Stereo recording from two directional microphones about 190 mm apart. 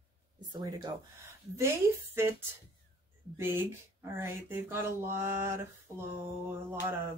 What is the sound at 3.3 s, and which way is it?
Speech, 10° right (ahead or behind).